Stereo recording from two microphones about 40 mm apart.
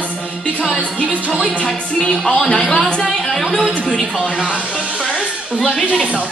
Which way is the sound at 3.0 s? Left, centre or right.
Centre.